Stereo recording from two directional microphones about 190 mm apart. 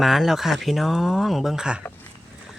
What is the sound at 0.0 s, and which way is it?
Speech, centre (ahead or behind).